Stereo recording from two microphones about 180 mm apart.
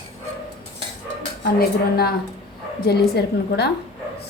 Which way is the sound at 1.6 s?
60° left (ahead or behind).